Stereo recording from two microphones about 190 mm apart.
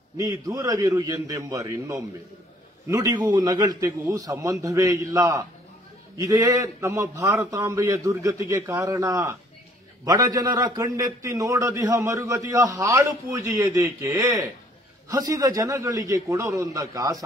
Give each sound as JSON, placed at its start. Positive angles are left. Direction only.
{"t": 0.2, "sound": "a man's voice", "side_deg": -20}